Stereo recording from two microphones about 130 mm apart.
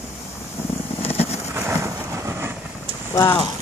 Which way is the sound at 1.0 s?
50° left (ahead or behind).